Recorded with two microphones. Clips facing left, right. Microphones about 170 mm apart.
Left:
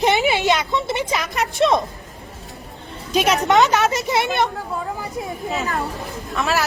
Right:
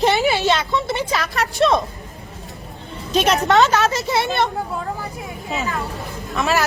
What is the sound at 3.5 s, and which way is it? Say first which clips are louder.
Speech: even; 20° left (ahead or behind).